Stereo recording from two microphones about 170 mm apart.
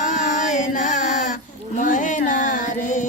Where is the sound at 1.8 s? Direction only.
50° left (ahead or behind).